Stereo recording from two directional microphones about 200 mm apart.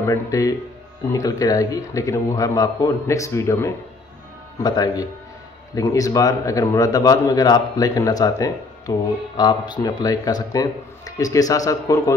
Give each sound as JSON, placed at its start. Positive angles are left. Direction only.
{"t": 0.0, "sound": "a man's voice", "side_deg": 15}